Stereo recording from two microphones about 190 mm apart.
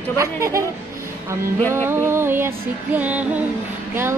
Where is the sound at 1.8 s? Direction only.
10° right (ahead or behind).